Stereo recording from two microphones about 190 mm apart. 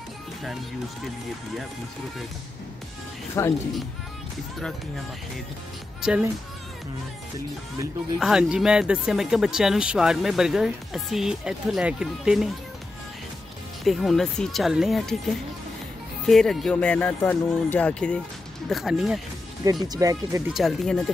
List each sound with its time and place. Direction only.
3.4 s speech: 15° left (ahead or behind)
6.0 s speech: 10° right (ahead or behind)
8.2 s speech: 5° right (ahead or behind)
13.8 s speech: centre (ahead or behind)
16.3 s speech: centre (ahead or behind)
19.6 s speech: 20° right (ahead or behind)
20.5 s speech: centre (ahead or behind)